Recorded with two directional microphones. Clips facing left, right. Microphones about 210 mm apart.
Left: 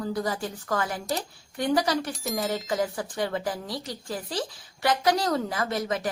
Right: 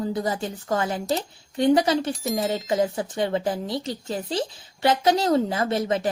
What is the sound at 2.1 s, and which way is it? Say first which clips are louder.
Speech: right 4 dB; centre (ahead or behind).